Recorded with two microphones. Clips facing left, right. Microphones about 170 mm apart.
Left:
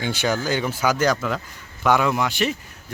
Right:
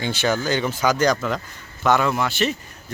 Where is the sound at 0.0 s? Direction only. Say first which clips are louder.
Right 1 dB; 10° left (ahead or behind).